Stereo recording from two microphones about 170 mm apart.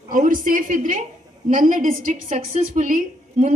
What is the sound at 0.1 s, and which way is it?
A woman's voice, 50° right (ahead or behind).